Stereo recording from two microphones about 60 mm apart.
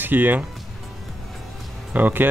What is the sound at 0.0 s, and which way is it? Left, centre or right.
Speech, right.